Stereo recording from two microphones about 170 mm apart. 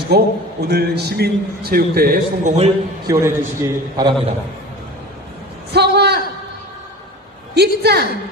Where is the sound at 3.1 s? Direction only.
15° right (ahead or behind).